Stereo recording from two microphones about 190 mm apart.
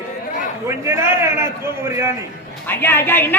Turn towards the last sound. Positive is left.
turn(degrees=10)  # may be behind; listen again after turning